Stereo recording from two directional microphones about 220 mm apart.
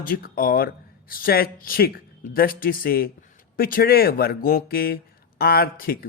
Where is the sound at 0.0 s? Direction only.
40° left (ahead or behind).